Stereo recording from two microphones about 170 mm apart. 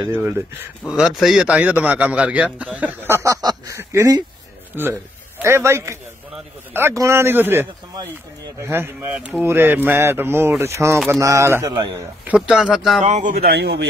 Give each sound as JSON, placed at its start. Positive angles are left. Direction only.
{"t": 0.1, "sound": "a man's voice", "side_deg": -10}
{"t": 12.3, "sound": "speech", "side_deg": -5}
{"t": 13.0, "sound": "speech", "side_deg": -40}
{"t": 13.3, "sound": "a man's voice", "side_deg": -65}